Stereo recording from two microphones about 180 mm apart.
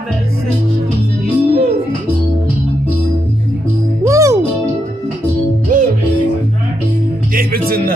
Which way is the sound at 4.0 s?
15° right (ahead or behind).